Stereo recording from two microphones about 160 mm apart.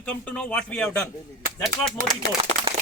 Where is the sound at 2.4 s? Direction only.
35° right (ahead or behind).